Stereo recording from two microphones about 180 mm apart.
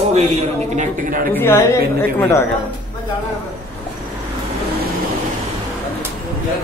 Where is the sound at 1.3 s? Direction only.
15° left (ahead or behind).